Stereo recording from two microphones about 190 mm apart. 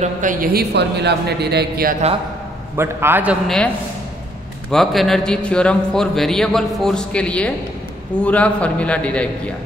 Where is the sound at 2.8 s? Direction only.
10° right (ahead or behind).